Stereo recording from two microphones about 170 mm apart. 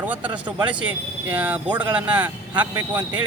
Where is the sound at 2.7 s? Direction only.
25° right (ahead or behind).